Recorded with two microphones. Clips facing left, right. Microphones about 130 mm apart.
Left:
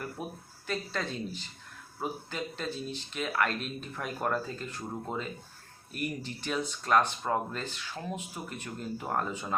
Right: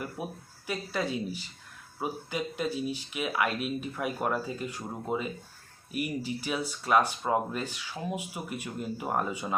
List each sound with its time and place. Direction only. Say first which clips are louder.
0.2 s speech: right 2 dB; 10° right (ahead or behind)